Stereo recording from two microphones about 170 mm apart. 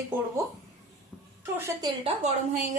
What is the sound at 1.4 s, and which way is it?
Speech, 15° right (ahead or behind).